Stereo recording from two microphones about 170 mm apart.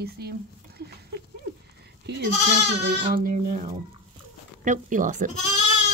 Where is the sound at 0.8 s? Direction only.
70° right (ahead or behind).